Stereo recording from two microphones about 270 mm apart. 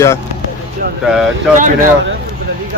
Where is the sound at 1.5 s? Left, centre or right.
Right.